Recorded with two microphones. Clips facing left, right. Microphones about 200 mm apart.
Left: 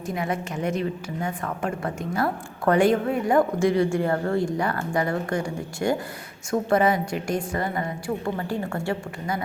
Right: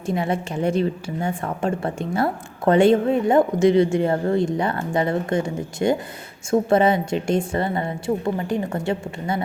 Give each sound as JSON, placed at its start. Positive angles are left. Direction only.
{"t": 0.0, "sound": "a woman's voice", "side_deg": -30}